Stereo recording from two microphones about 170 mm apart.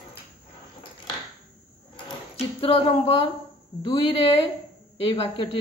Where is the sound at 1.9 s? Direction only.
35° left (ahead or behind).